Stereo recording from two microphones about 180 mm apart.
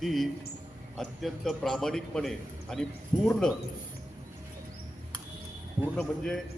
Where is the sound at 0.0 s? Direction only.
Centre (ahead or behind).